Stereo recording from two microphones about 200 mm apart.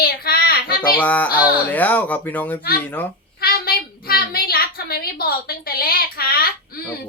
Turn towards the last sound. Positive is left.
turn(degrees=50)  # may be behind; listen again after turning